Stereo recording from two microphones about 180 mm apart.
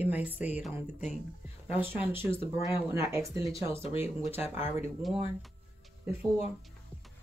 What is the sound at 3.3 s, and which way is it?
Speech, 30° left (ahead or behind).